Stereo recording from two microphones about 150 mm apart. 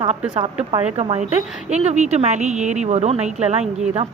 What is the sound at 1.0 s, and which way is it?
A woman's voice, 45° right (ahead or behind).